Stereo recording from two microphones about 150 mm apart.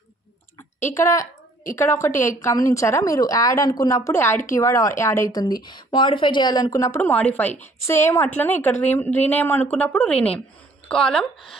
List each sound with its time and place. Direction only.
0.8 s a woman's voice: 20° left (ahead or behind)